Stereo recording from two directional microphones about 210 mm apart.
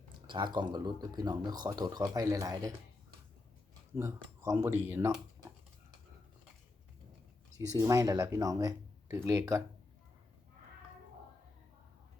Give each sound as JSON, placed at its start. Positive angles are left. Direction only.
{"t": 0.3, "sound": "speech", "side_deg": -20}
{"t": 3.9, "sound": "speech", "side_deg": -15}
{"t": 7.5, "sound": "speech", "side_deg": -15}